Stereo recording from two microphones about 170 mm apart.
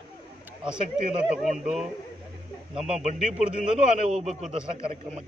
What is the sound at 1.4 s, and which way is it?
Speech, 45° right (ahead or behind).